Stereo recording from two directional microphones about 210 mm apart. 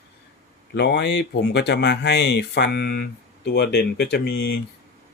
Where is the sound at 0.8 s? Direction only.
55° left (ahead or behind).